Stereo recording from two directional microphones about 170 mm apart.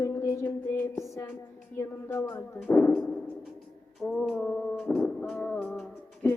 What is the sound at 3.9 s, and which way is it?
Music, centre (ahead or behind).